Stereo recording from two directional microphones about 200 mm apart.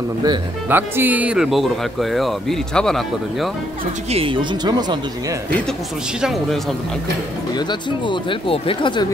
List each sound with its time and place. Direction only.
0.7 s speech: 10° right (ahead or behind)
4.1 s speech: 25° right (ahead or behind)
6.2 s speech: centre (ahead or behind)
7.5 s speech: 20° left (ahead or behind)